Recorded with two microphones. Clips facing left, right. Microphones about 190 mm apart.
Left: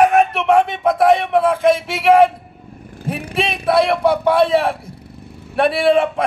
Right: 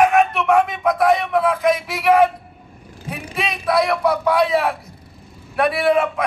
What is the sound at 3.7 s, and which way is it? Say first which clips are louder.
A man's voice: left 3 dB; 30° left (ahead or behind).